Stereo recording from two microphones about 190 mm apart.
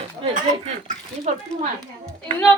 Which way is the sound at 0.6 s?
40° right (ahead or behind).